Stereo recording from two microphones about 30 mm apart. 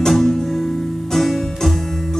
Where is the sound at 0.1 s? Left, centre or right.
Centre.